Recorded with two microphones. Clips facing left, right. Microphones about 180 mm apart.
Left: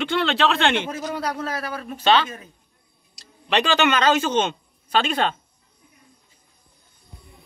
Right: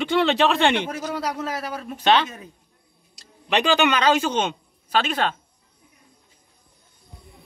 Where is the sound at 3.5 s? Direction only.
15° right (ahead or behind).